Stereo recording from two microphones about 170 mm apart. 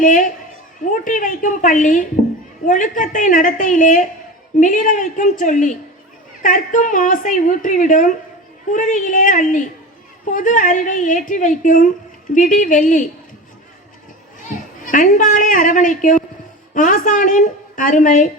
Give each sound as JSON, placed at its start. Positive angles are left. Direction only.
{"t": 0.0, "sound": "a woman's voice", "side_deg": 50}
{"t": 14.8, "sound": "a woman's voice", "side_deg": 50}